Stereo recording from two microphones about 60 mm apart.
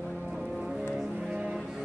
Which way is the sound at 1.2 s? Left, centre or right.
Centre.